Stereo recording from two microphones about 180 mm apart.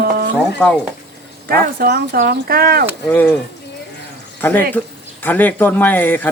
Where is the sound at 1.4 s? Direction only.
55° right (ahead or behind).